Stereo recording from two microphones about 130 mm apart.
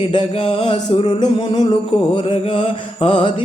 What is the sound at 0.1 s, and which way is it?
Music, 40° left (ahead or behind).